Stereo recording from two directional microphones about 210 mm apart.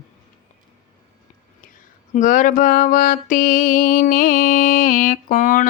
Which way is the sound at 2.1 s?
40° left (ahead or behind).